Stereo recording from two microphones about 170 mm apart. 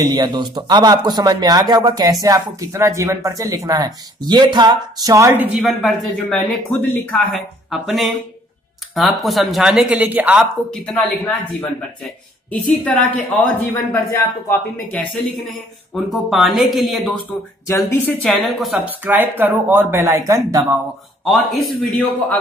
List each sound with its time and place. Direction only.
0.0 s speech: 25° right (ahead or behind); by 10.4 s 10° right (ahead or behind)
10.7 s a woman's voice: 5° left (ahead or behind)
12.4 s a woman's voice: 10° left (ahead or behind)
16.1 s speech: centre (ahead or behind)
17.6 s a woman's voice: 15° left (ahead or behind)
18.2 s speech: centre (ahead or behind); by 20.8 s 15° right (ahead or behind)
21.2 s speech: centre (ahead or behind)